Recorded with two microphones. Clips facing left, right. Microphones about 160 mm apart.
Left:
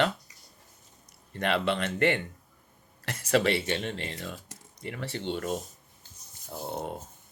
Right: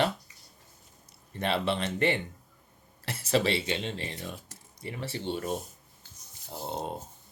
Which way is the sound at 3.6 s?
20° right (ahead or behind).